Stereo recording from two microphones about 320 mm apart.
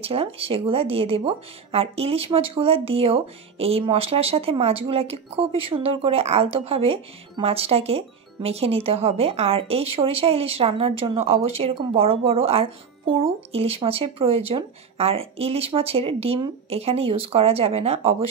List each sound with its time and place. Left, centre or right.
0.0 s speech: centre